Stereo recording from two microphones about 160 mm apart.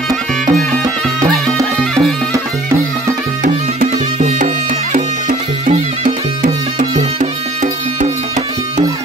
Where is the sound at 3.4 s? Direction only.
55° right (ahead or behind).